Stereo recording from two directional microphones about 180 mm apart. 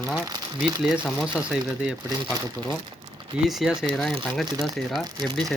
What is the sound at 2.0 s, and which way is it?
Speech, 20° right (ahead or behind).